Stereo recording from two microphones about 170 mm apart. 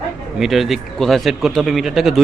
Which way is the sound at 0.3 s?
Centre (ahead or behind).